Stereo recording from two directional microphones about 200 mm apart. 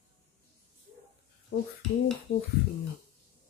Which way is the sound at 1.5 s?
60° left (ahead or behind).